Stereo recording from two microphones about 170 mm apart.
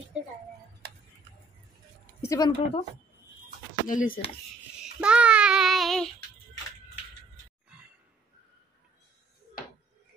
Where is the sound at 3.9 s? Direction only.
50° left (ahead or behind).